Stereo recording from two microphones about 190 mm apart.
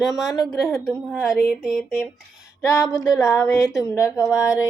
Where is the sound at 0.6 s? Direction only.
Centre (ahead or behind).